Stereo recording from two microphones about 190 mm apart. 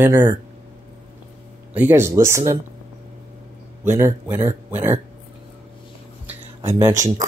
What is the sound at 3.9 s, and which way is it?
Speech, 15° right (ahead or behind).